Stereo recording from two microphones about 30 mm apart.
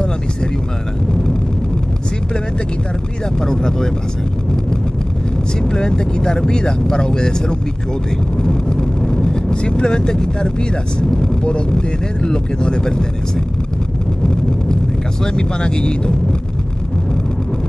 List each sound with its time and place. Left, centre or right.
3.3 s speech: centre
5.6 s speech: left
14.2 s wind noise: left
15.2 s speech: left